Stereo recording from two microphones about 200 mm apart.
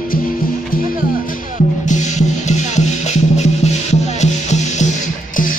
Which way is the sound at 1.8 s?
35° left (ahead or behind).